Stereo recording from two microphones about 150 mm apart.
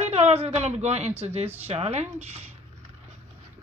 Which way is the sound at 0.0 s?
45° right (ahead or behind).